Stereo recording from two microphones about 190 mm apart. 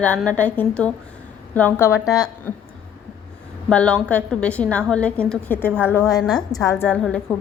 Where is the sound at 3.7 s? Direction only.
5° left (ahead or behind).